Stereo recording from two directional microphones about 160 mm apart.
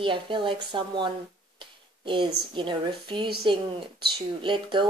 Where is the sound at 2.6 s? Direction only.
30° right (ahead or behind).